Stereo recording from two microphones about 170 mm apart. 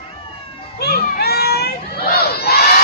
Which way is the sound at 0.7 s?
65° left (ahead or behind).